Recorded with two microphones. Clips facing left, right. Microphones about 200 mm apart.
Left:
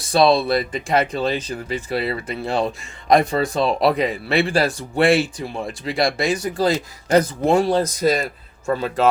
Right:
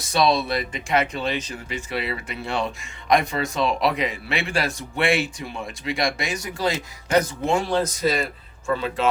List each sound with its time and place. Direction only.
0.0 s speech: 30° left (ahead or behind)